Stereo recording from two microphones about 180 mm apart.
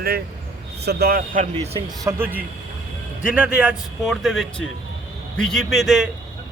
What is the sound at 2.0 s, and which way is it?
A man's voice, 10° right (ahead or behind).